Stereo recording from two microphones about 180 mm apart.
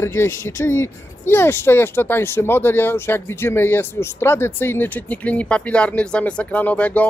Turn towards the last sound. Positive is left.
turn(degrees=10)  # may be behind; listen again after turning